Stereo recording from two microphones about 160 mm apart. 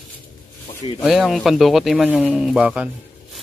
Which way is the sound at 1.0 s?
Centre (ahead or behind).